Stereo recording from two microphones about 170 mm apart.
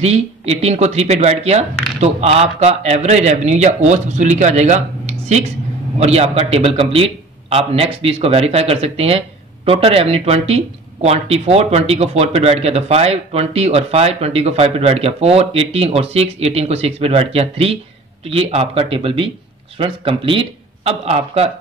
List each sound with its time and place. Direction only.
0.0 s speech: 40° right (ahead or behind)